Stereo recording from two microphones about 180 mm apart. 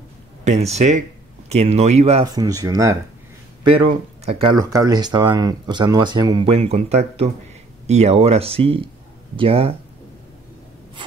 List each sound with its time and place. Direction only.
0.5 s speech: 35° right (ahead or behind)
2.3 s speech: 20° right (ahead or behind)
3.6 s speech: 30° right (ahead or behind)
6.6 s speech: 35° right (ahead or behind)